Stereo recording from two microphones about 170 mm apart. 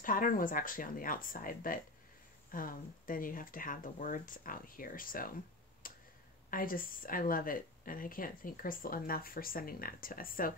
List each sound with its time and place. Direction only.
0.0 s speech: 55° left (ahead or behind)
5.8 s a sound: 55° left (ahead or behind)
6.5 s speech: 55° left (ahead or behind)